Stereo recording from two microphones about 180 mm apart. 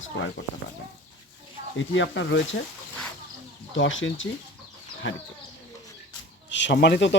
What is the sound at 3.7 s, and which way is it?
Speech, 90° left.